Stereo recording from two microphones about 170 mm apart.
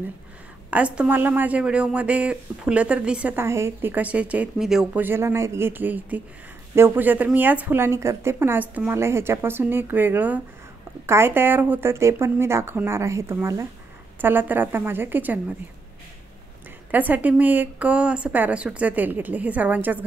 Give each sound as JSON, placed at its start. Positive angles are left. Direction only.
{"t": 0.7, "sound": "speech", "side_deg": -10}
{"t": 16.9, "sound": "speech", "side_deg": -10}